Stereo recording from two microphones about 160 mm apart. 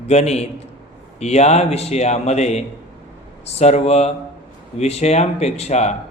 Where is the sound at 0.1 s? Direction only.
45° left (ahead or behind).